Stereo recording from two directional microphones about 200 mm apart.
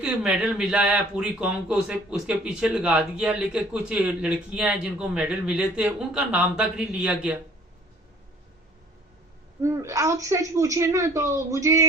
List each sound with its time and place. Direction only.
0.0 s speech: 5° right (ahead or behind)
9.6 s a woman's voice: 15° right (ahead or behind)